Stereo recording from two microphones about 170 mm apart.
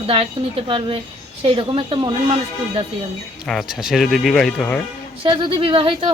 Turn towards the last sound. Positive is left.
turn(degrees=-30)  # may be behind; listen again after turning